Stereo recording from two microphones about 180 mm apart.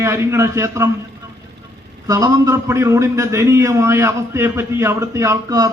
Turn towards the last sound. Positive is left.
turn(degrees=-20)  # may be behind; listen again after turning